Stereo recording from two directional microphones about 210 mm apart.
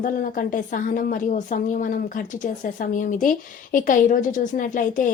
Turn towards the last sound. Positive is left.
turn(degrees=40)  # may be behind; listen again after turning